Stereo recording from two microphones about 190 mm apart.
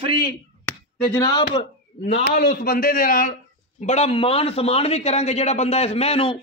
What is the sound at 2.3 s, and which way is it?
A man's voice, 50° left (ahead or behind).